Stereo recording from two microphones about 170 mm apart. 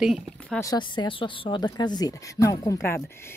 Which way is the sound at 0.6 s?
25° left (ahead or behind).